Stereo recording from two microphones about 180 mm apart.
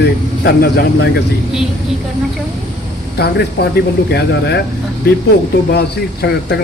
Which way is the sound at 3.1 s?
65° left (ahead or behind).